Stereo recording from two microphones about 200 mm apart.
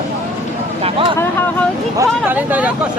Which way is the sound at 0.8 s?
30° right (ahead or behind).